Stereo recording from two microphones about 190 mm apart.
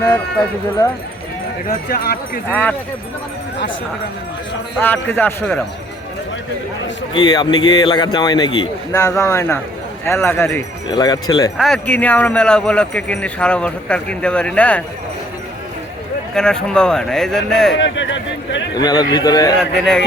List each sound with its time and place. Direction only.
1.6 s speech: 50° left (ahead or behind)
2.5 s a man's voice: 10° left (ahead or behind)
4.8 s a man's voice: 10° left (ahead or behind)
7.1 s a man's voice: 20° left (ahead or behind)
11.5 s speech: centre (ahead or behind)
16.3 s speech: 5° left (ahead or behind)
17.7 s speech: 70° left (ahead or behind)
18.8 s a man's voice: 20° left (ahead or behind)
19.8 s speech: 5° left (ahead or behind)